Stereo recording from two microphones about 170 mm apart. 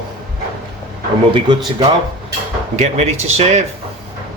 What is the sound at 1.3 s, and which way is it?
Speech, 25° right (ahead or behind).